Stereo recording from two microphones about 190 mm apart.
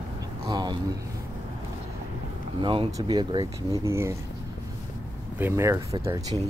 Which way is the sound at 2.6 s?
25° right (ahead or behind).